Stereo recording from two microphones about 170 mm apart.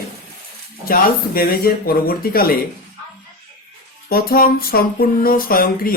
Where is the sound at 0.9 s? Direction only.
60° left (ahead or behind).